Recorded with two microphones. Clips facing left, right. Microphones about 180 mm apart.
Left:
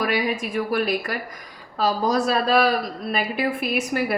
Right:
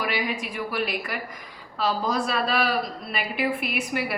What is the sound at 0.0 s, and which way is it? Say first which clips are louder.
A woman's voice: left 5 dB; 45° left (ahead or behind).